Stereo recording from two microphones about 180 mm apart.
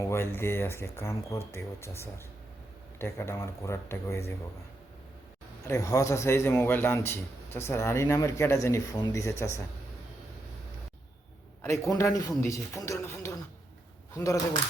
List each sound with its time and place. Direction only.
0.0 s a man's voice: 15° left (ahead or behind)
3.0 s a man's voice: 15° left (ahead or behind)
5.6 s a man's voice: 15° left (ahead or behind)
11.6 s a man's voice: 15° left (ahead or behind)